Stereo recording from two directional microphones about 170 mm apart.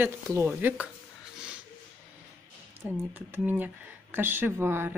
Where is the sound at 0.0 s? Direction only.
15° right (ahead or behind).